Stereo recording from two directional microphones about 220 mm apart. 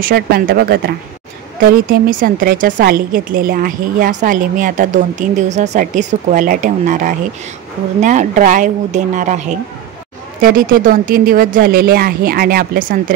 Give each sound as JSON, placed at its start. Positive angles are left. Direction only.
{"t": 0.0, "sound": "a woman's voice", "side_deg": -45}
{"t": 10.4, "sound": "a woman's voice", "side_deg": -40}